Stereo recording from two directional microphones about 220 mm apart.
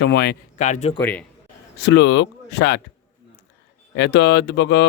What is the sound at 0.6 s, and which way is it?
Speech, 30° left (ahead or behind).